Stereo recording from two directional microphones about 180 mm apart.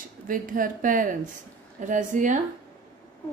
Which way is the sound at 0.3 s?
50° right (ahead or behind).